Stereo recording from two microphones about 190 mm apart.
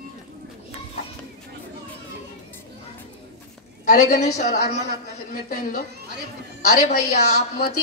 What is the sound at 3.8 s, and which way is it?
A woman's voice, 40° left (ahead or behind).